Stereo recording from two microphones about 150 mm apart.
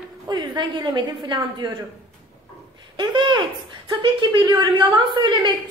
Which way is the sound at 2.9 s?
30° right (ahead or behind).